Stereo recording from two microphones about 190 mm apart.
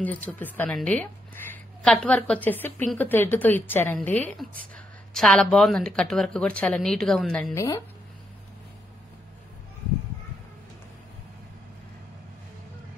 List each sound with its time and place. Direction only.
0.0 s a woman's voice: 10° left (ahead or behind)
7.5 s speech: 20° left (ahead or behind)